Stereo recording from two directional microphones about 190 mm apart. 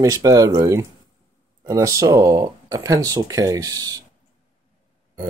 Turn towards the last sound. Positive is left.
turn(degrees=-20)  # may be behind; listen again after turning